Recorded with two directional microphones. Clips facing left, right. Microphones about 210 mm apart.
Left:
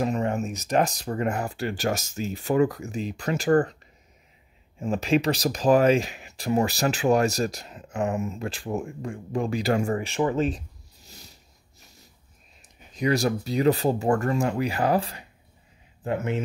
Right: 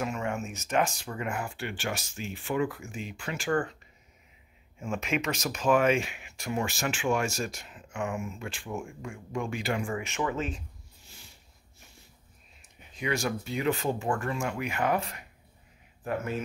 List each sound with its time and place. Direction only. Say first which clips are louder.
0.0 s speech: left 7 dB; 35° left (ahead or behind)
4.7 s speech: left 8 dB; 35° left (ahead or behind)
11.8 s a sound: left 2 dB; 40° left (ahead or behind)
12.9 s speech: left 7 dB; 40° left (ahead or behind)